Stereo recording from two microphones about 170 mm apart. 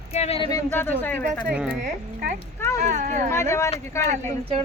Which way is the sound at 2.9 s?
50° right (ahead or behind).